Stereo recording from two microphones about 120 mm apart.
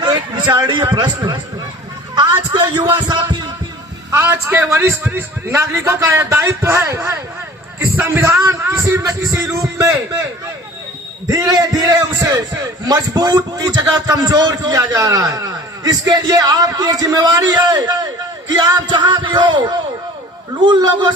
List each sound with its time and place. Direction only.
0.0 s a man's voice: 35° right (ahead or behind)
2.5 s a man's voice: 40° right (ahead or behind)
4.1 s a man's voice: 20° right (ahead or behind)
11.3 s a man's voice: 30° right (ahead or behind)